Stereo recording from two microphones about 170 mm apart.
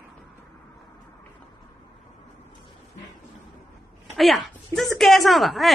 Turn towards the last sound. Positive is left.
turn(degrees=0)  # may be behind; listen again after turning